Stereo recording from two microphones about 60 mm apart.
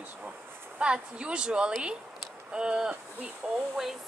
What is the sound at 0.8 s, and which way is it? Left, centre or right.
Speech, centre.